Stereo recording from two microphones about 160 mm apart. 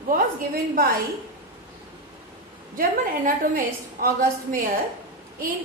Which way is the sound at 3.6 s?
60° right (ahead or behind).